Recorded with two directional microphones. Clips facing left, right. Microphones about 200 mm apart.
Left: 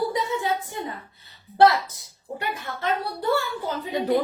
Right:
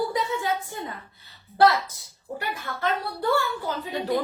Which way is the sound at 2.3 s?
20° left (ahead or behind).